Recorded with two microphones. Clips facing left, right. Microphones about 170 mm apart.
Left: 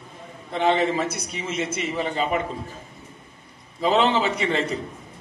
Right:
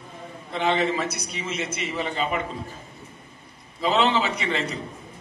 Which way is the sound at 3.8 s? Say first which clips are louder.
Left 2 dB; 50° left (ahead or behind).